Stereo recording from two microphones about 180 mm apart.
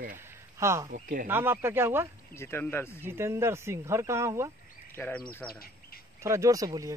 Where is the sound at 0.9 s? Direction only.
45° right (ahead or behind).